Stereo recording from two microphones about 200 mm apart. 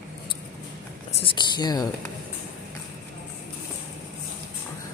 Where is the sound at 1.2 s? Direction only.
20° left (ahead or behind).